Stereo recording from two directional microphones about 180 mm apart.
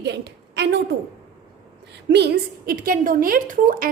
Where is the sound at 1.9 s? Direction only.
70° right (ahead or behind).